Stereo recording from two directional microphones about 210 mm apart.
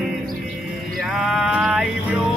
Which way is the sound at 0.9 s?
5° right (ahead or behind).